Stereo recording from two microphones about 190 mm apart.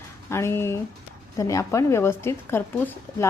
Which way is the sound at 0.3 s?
15° left (ahead or behind).